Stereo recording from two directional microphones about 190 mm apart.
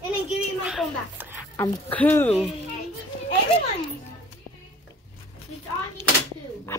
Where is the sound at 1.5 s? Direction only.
10° left (ahead or behind).